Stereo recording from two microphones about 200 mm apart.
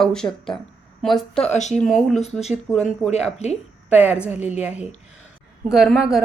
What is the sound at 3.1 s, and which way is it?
A woman's voice, 30° left (ahead or behind).